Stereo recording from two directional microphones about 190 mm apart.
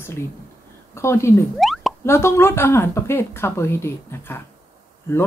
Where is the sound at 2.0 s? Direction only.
15° left (ahead or behind).